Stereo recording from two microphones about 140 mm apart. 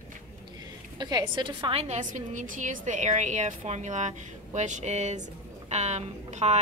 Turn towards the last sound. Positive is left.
turn(degrees=-55)  # may be behind; listen again after turning